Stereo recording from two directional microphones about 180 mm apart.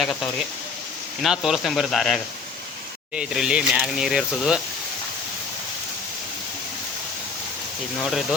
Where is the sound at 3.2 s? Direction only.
5° right (ahead or behind).